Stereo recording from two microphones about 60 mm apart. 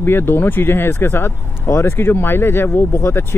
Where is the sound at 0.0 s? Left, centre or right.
Left.